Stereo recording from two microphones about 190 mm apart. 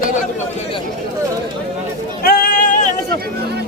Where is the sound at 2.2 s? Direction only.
50° left (ahead or behind).